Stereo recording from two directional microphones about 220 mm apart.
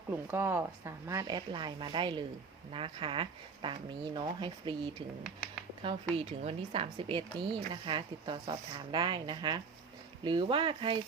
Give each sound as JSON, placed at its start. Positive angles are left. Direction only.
{"t": 0.3, "sound": "speech", "side_deg": -10}